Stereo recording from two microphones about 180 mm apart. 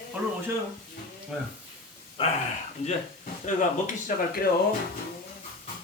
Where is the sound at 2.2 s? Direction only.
30° left (ahead or behind).